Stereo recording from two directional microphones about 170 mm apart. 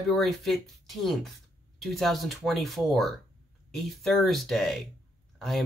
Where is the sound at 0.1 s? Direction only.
Centre (ahead or behind).